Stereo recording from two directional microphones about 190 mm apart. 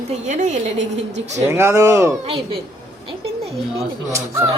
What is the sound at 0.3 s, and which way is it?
Speech, 40° right (ahead or behind).